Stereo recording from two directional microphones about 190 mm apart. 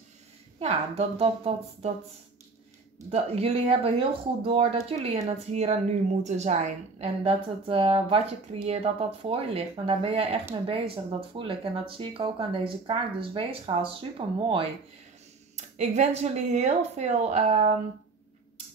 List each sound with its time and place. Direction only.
0.6 s a woman's voice: 35° right (ahead or behind)
3.1 s a woman's voice: 30° right (ahead or behind)
15.5 s a sound: 35° right (ahead or behind)
16.2 s a woman's voice: 35° right (ahead or behind)